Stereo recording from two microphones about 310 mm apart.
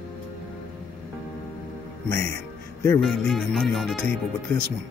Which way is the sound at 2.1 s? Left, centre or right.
Centre.